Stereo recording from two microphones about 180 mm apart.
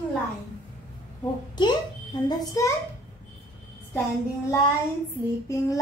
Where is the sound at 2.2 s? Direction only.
20° left (ahead or behind).